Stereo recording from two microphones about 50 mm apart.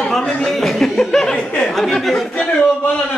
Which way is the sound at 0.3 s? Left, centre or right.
Centre.